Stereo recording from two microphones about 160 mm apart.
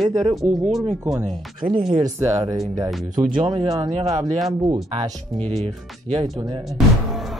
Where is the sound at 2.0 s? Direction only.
20° right (ahead or behind).